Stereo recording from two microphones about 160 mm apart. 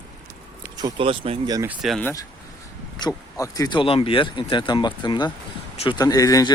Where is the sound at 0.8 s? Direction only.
35° right (ahead or behind).